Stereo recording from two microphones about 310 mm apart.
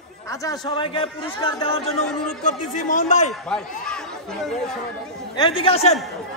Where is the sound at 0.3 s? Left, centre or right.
Centre.